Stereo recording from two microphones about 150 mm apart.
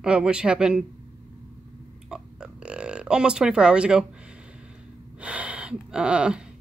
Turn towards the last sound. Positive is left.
turn(degrees=-5)  # may be behind; listen again after turning